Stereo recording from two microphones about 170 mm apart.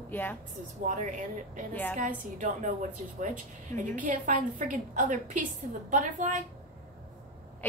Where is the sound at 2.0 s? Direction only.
45° right (ahead or behind).